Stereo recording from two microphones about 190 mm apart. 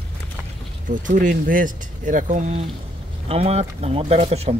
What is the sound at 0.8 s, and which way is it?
Speech, 45° right (ahead or behind).